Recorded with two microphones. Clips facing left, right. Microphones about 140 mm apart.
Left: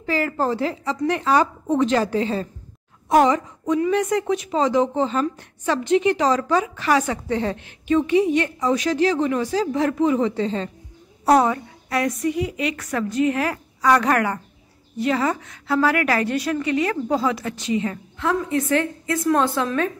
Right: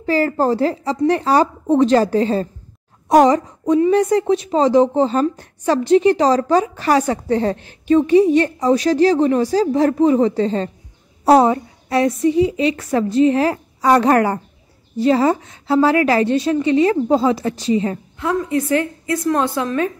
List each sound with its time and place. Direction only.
0.0 s a woman's voice: 35° right (ahead or behind)
18.2 s a woman's voice: centre (ahead or behind)